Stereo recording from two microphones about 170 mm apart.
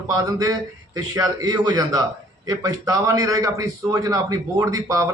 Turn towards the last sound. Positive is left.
turn(degrees=-20)  # may be behind; listen again after turning